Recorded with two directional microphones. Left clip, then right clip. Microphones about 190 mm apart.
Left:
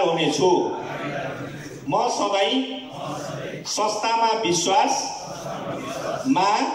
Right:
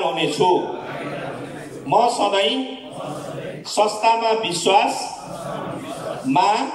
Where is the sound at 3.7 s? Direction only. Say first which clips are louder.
Right 5 dB; 45° right (ahead or behind).